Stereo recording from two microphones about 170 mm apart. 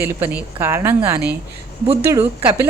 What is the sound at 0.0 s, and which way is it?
A woman's voice, 10° right (ahead or behind).